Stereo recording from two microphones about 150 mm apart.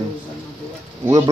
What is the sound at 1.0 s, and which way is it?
Speech, 20° right (ahead or behind).